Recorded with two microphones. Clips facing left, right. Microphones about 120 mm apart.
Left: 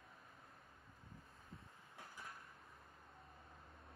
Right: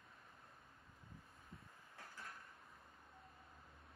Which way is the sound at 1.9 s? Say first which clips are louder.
Even; 25° left (ahead or behind).